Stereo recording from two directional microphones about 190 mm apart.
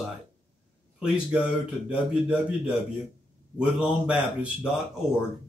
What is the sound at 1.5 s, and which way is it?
Speech, 5° right (ahead or behind).